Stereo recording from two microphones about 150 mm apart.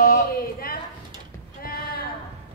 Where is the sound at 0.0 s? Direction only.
75° left (ahead or behind).